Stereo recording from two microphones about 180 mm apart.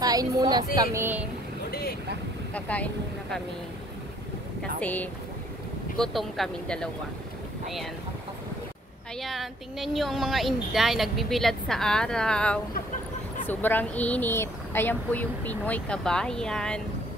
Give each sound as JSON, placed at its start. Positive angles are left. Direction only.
{"t": 0.0, "sound": "speech", "side_deg": -20}
{"t": 1.7, "sound": "boat", "side_deg": 60}
{"t": 2.5, "sound": "speech", "side_deg": 10}
{"t": 4.7, "sound": "a woman's voice", "side_deg": 10}
{"t": 9.2, "sound": "a woman's voice", "side_deg": 0}